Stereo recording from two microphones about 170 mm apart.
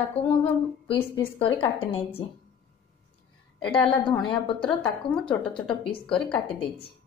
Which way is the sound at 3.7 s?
30° left (ahead or behind).